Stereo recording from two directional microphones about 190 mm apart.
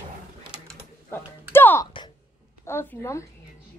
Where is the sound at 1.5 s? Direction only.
10° left (ahead or behind).